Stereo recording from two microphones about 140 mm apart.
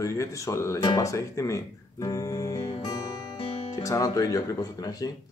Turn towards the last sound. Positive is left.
turn(degrees=25)  # may be behind; listen again after turning